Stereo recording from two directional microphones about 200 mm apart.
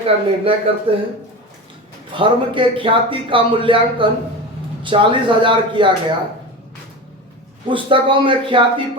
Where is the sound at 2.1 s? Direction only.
25° right (ahead or behind).